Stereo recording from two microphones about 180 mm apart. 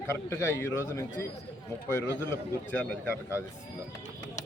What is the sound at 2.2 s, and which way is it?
Speech, 10° left (ahead or behind).